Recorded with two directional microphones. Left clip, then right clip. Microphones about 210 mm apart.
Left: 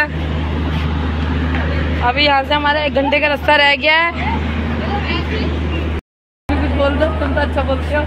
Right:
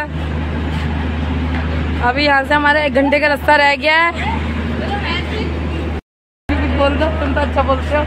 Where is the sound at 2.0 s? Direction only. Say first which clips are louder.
Even; 20° right (ahead or behind).